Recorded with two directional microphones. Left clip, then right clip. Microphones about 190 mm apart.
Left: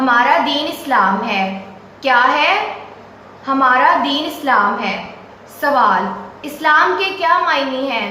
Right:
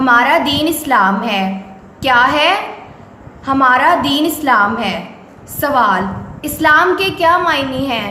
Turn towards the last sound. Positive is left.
turn(degrees=-55)  # may be behind; listen again after turning